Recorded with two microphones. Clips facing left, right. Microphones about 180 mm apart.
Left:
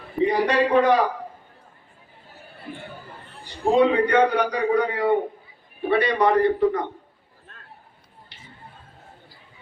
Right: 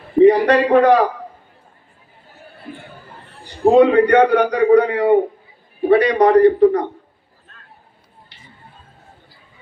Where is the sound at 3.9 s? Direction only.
65° right (ahead or behind).